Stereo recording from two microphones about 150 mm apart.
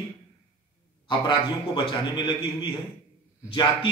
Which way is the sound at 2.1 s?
35° left (ahead or behind).